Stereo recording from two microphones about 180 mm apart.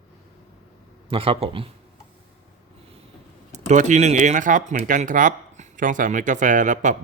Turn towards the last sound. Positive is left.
turn(degrees=-45)  # may be behind; listen again after turning